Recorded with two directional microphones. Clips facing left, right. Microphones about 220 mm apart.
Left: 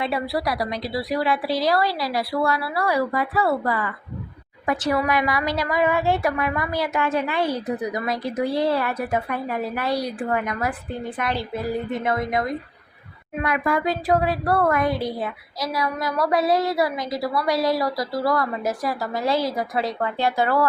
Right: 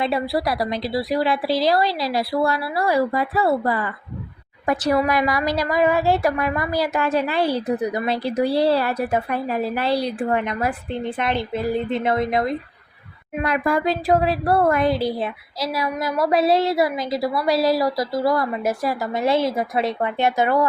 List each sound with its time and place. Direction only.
0.0 s a woman's voice: 30° right (ahead or behind)